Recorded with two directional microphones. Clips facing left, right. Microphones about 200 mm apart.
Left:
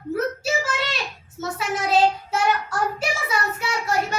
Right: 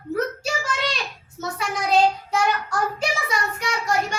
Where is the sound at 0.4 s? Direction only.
5° left (ahead or behind).